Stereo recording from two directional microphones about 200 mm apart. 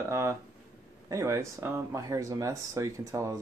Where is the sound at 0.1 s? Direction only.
15° right (ahead or behind).